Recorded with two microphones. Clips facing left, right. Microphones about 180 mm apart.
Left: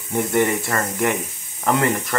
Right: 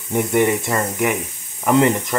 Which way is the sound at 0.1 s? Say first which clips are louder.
Right 2 dB; 15° right (ahead or behind).